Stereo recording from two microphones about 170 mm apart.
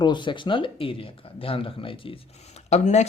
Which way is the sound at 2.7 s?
40° left (ahead or behind).